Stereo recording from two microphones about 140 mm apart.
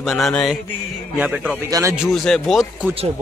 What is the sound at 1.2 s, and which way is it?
Speech, 10° right (ahead or behind).